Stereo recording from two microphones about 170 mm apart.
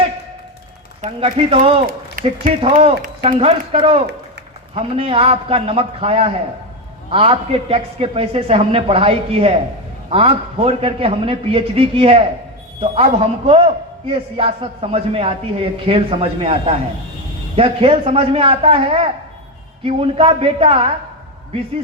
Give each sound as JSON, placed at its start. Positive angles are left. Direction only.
{"t": 1.0, "sound": "a man's voice", "side_deg": -35}